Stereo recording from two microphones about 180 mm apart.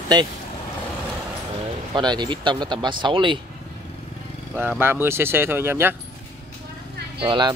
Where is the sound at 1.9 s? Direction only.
25° right (ahead or behind).